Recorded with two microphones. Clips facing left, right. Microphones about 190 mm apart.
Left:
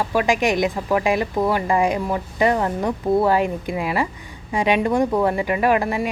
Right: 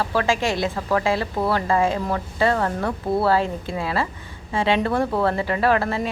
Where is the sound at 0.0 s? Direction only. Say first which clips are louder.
Left 2 dB; 15° left (ahead or behind).